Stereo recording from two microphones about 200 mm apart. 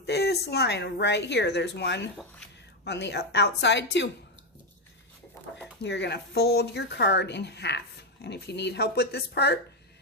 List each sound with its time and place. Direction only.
0.0 s speech: 55° left (ahead or behind)
5.8 s speech: 60° left (ahead or behind)